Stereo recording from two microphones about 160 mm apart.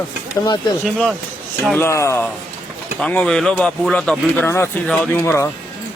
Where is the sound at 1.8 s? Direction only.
15° left (ahead or behind).